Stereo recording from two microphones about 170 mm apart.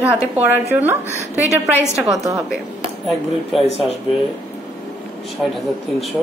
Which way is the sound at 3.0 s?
Centre (ahead or behind).